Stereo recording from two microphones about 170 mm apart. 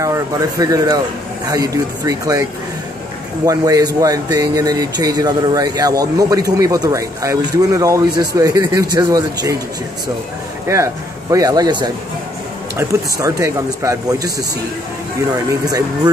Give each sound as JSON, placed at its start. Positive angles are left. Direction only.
{"t": 0.0, "sound": "speech", "side_deg": -20}
{"t": 3.4, "sound": "speech", "side_deg": -20}
{"t": 10.7, "sound": "speech", "side_deg": -20}
{"t": 15.6, "sound": "speech", "side_deg": -25}